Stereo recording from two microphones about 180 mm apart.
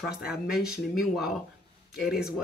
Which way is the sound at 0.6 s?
Centre (ahead or behind).